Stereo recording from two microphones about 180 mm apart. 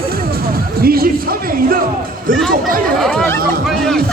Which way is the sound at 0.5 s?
55° right (ahead or behind).